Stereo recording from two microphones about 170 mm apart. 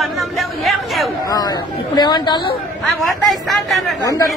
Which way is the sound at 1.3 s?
25° left (ahead or behind).